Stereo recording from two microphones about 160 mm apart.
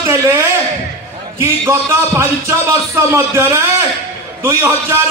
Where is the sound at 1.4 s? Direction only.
15° right (ahead or behind).